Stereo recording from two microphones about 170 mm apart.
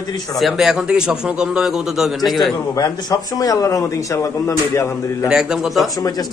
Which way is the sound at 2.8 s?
20° left (ahead or behind).